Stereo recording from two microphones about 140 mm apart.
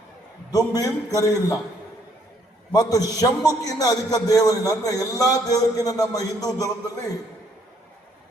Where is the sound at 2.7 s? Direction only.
25° left (ahead or behind).